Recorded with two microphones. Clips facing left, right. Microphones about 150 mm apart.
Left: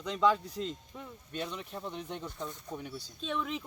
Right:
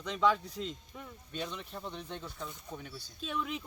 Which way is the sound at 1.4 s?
5° left (ahead or behind).